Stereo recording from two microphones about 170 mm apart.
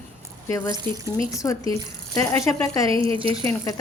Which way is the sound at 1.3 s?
20° left (ahead or behind).